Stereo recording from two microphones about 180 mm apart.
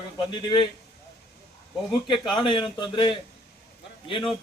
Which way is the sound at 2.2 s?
25° left (ahead or behind).